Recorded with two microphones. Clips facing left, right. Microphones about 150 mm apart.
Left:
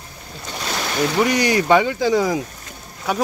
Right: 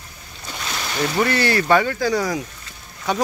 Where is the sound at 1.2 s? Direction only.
15° left (ahead or behind).